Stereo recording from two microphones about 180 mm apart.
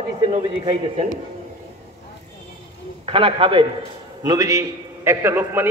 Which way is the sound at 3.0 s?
30° right (ahead or behind).